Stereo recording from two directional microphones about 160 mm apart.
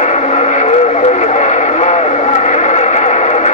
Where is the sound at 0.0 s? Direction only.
45° left (ahead or behind).